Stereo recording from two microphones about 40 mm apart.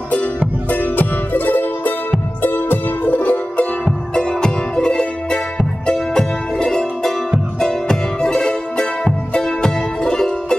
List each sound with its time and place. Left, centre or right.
0.7 s music: left
4.1 s music: centre